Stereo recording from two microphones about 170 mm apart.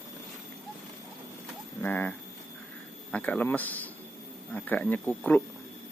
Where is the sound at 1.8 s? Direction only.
10° left (ahead or behind).